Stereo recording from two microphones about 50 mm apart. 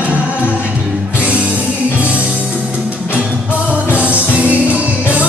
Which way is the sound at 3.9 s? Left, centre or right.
Right.